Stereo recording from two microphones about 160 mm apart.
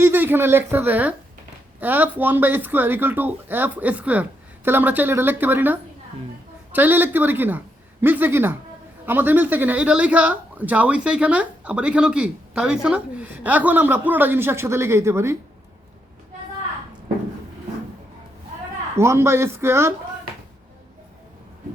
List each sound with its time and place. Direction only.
0.0 s speech: 10° right (ahead or behind)
18.9 s speech: 15° right (ahead or behind)